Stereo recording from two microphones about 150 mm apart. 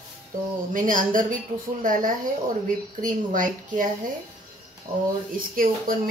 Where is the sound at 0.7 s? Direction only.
60° right (ahead or behind).